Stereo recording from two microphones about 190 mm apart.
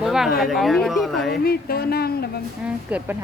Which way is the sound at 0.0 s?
Centre (ahead or behind).